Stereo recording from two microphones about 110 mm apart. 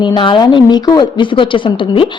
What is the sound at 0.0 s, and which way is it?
A woman's voice, 45° left (ahead or behind).